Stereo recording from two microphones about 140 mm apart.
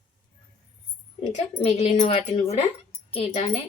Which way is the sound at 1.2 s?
45° left (ahead or behind).